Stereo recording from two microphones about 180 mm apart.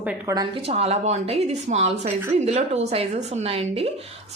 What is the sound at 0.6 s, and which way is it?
A woman's voice, 35° right (ahead or behind).